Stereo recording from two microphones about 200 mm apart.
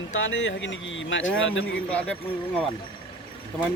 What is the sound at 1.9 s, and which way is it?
Speech, 5° left (ahead or behind).